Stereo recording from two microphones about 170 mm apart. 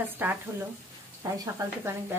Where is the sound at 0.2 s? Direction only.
10° right (ahead or behind).